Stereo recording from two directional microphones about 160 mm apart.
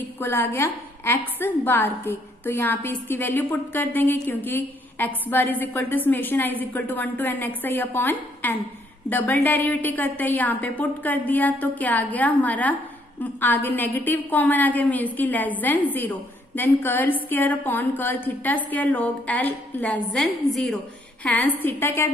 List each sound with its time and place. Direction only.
0.2 s a woman's voice: 15° left (ahead or behind)